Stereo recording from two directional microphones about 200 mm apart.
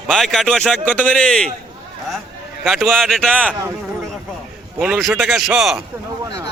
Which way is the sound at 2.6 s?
Centre (ahead or behind).